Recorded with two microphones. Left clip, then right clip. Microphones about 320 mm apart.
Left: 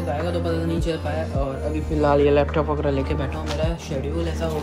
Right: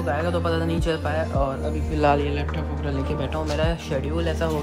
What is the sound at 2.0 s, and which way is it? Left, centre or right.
Speech, centre.